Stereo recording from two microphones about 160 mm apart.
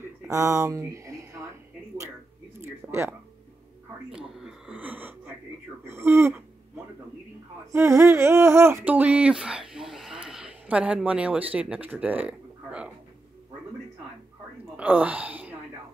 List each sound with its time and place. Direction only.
0.0 s speech: 15° right (ahead or behind)
2.9 s speech: 15° right (ahead or behind)
4.1 s a sound: centre (ahead or behind)
5.9 s speech: 15° right (ahead or behind)
7.7 s a sound: 15° right (ahead or behind)
14.8 s speech: 10° right (ahead or behind)